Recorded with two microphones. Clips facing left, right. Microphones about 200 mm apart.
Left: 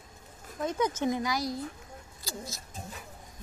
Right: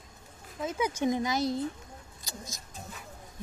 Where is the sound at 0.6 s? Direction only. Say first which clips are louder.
Left 1 dB; 5° right (ahead or behind).